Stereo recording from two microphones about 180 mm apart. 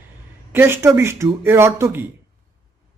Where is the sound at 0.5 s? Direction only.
15° right (ahead or behind).